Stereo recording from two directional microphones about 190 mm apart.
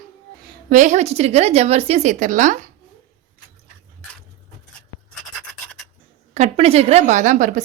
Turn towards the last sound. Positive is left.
turn(degrees=-40)  # may be behind; listen again after turning